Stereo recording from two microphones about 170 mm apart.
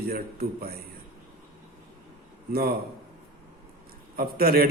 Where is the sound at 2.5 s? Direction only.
65° right (ahead or behind).